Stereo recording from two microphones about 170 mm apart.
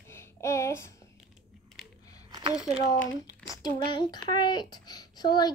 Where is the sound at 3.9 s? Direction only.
25° left (ahead or behind).